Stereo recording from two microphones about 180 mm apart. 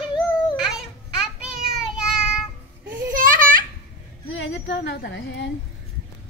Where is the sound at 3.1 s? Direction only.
50° right (ahead or behind).